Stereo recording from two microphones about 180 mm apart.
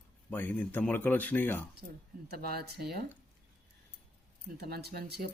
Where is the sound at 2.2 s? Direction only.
60° right (ahead or behind).